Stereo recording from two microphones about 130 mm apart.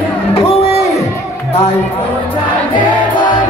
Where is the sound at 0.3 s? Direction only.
50° left (ahead or behind).